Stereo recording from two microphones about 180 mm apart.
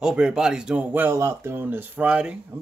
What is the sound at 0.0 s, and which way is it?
Speech, 5° right (ahead or behind).